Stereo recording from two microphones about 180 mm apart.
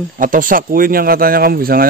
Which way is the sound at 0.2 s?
50° right (ahead or behind).